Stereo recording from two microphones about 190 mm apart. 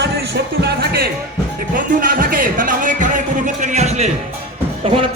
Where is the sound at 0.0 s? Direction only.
60° right (ahead or behind).